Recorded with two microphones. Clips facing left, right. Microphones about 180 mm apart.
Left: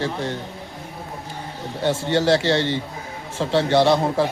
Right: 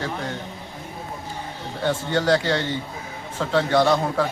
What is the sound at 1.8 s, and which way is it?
A man's voice, 25° left (ahead or behind).